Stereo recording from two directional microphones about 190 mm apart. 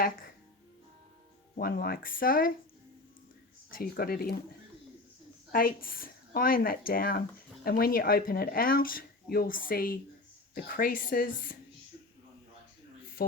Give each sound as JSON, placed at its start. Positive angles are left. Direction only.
{"t": 1.5, "sound": "speech", "side_deg": 50}
{"t": 3.7, "sound": "speech", "side_deg": 50}
{"t": 5.5, "sound": "speech", "side_deg": 50}